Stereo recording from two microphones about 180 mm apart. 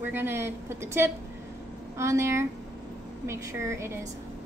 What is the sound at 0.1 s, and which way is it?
A woman's voice, 10° right (ahead or behind).